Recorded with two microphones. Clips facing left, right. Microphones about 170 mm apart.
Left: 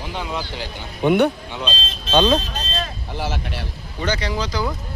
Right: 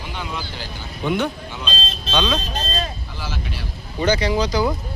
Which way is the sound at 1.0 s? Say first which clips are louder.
Left 6 dB; 55° left (ahead or behind).